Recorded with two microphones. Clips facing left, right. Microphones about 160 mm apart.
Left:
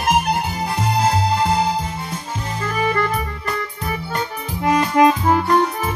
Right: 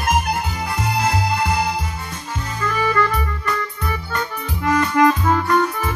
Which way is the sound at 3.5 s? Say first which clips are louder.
Right 1 dB; 30° left (ahead or behind).